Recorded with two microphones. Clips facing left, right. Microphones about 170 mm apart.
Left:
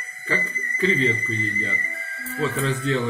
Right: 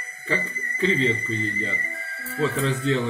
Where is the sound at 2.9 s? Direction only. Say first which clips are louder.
Right 1 dB; 25° right (ahead or behind).